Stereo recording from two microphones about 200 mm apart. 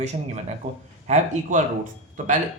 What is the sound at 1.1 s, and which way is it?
Speech, 35° right (ahead or behind).